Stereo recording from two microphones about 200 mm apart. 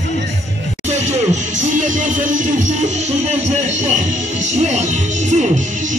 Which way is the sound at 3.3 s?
35° right (ahead or behind).